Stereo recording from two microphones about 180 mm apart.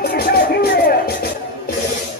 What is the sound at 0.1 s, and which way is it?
Music, 60° left (ahead or behind).